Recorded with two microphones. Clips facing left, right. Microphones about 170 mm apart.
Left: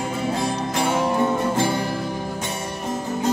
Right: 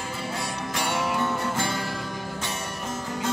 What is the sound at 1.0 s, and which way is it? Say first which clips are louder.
Music: left 6 dB; 25° left (ahead or behind).